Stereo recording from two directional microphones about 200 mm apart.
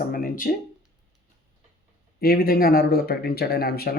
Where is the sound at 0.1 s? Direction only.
45° left (ahead or behind).